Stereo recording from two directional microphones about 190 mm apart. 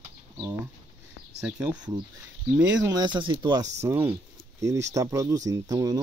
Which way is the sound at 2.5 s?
15° right (ahead or behind).